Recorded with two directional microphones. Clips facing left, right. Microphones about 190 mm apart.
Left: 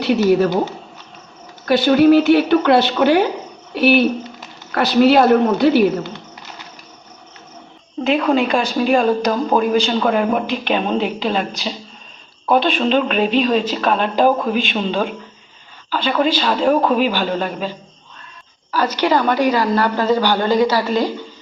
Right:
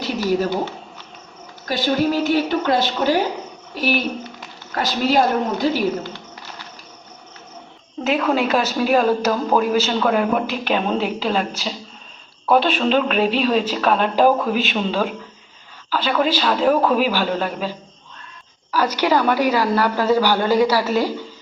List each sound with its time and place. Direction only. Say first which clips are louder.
1.6 s speech: left 8 dB; 65° left (ahead or behind)
8.3 s a woman's voice: left 2 dB; 5° right (ahead or behind)